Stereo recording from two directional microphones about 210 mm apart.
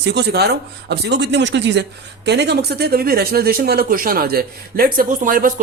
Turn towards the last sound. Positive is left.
turn(degrees=-40)  # may be behind; listen again after turning